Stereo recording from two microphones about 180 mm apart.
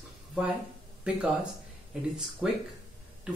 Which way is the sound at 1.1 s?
5° right (ahead or behind).